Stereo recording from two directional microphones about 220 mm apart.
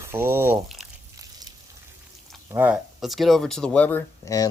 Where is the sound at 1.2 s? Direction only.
15° right (ahead or behind).